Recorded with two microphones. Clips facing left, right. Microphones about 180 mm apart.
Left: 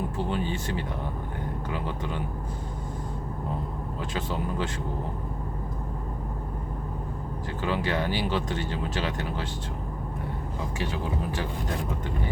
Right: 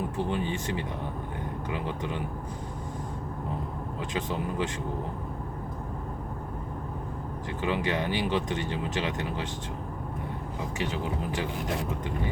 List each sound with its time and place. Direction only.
0.2 s speech: 15° right (ahead or behind)
4.1 s speech: 20° right (ahead or behind)
7.6 s speech: 20° right (ahead or behind)
10.8 s speech: 20° right (ahead or behind)